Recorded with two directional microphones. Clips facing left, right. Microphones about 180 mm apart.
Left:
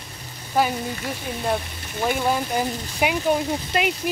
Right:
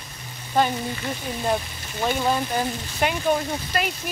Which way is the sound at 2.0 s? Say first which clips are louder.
Left 1 dB; 10° left (ahead or behind).